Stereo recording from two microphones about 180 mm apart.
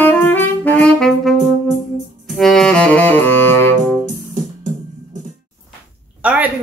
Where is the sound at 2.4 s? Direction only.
Centre (ahead or behind).